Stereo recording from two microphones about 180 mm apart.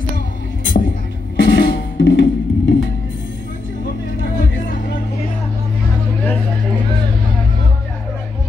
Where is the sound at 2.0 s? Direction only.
90° left.